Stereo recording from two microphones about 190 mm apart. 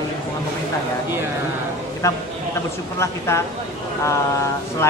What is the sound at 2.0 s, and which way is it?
Speech, 15° left (ahead or behind).